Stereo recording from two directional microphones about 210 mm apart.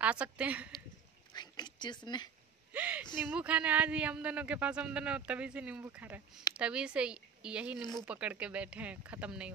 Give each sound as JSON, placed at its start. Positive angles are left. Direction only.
{"t": 0.0, "sound": "speech", "side_deg": -5}
{"t": 1.3, "sound": "speech", "side_deg": 20}
{"t": 2.7, "sound": "a sound", "side_deg": -5}
{"t": 3.3, "sound": "speech", "side_deg": -5}